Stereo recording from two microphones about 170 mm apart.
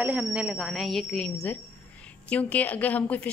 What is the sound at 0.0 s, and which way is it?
Speech, 5° right (ahead or behind).